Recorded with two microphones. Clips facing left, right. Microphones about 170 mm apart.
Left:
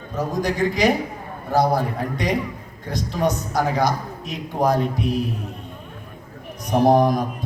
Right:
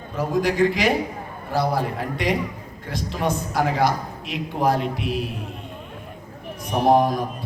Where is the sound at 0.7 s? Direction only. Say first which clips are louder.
Left 2 dB; 40° left (ahead or behind).